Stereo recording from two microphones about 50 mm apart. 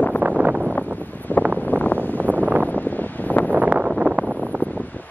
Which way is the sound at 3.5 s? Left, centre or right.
Right.